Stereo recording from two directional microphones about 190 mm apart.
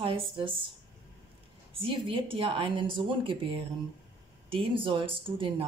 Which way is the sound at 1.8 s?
25° right (ahead or behind).